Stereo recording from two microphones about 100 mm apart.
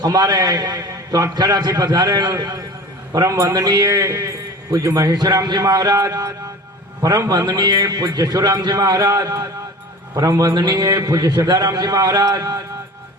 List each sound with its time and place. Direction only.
0.0 s a man's voice: 40° right (ahead or behind)
3.1 s a man's voice: 35° right (ahead or behind)